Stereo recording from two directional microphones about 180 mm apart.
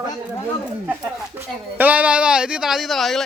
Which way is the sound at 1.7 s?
10° right (ahead or behind).